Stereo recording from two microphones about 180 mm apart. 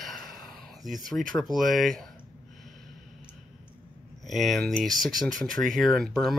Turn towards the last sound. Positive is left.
turn(degrees=0)  # may be behind; listen again after turning